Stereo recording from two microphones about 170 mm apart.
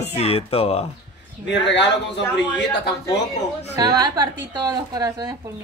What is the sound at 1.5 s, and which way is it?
Speech, 90° left.